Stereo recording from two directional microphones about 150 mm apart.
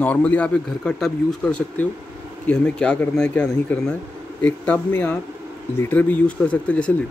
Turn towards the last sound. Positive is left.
turn(degrees=10)  # may be behind; listen again after turning